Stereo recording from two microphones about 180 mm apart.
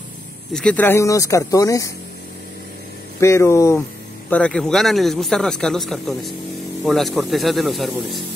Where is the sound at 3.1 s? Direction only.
15° left (ahead or behind).